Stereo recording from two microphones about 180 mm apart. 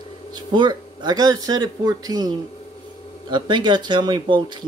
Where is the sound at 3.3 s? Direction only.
25° right (ahead or behind).